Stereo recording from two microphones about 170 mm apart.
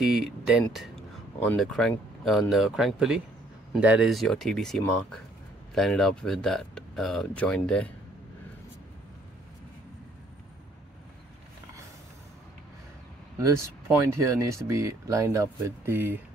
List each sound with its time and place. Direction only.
0.1 s speech: centre (ahead or behind)
14.0 s speech: 20° right (ahead or behind)